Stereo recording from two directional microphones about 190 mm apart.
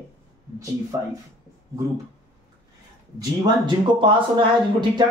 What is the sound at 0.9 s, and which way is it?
Speech, 20° right (ahead or behind).